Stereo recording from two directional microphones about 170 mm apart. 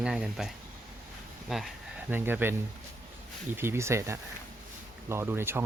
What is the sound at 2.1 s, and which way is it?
Speech, 10° right (ahead or behind).